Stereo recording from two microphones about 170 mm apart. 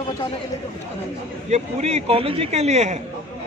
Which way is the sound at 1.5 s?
40° right (ahead or behind).